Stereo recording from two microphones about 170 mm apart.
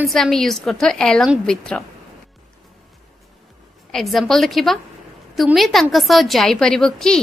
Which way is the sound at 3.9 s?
Centre (ahead or behind).